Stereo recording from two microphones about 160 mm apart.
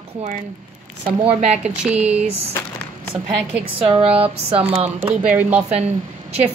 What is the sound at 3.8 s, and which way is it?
Speech, 35° right (ahead or behind).